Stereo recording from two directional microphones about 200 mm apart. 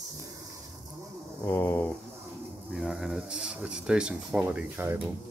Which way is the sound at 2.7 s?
Centre (ahead or behind).